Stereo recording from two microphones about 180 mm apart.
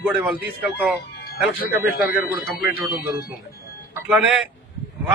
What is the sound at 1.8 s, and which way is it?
Speech, 10° right (ahead or behind).